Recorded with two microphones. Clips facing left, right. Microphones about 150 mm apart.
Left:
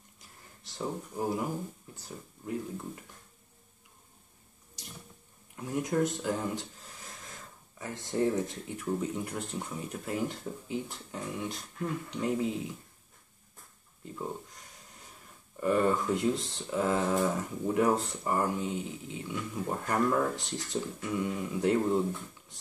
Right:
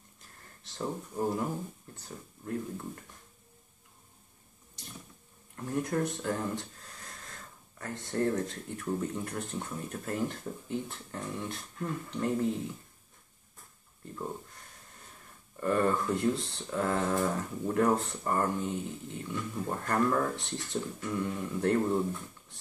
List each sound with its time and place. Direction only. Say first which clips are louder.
0.2 s a sound: left 1 dB; 5° left (ahead or behind)
2.0 s speech: left 1 dB; 5° left (ahead or behind)
5.6 s speech: left 2 dB; 5° left (ahead or behind)
6.6 s speech: left 1 dB; 15° left (ahead or behind)
14.0 s speech: left 1 dB; 5° left (ahead or behind)
15.6 s speech: left 1 dB; 10° left (ahead or behind)